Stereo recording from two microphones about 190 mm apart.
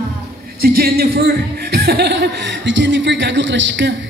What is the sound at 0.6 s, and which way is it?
A man's voice, 55° right (ahead or behind).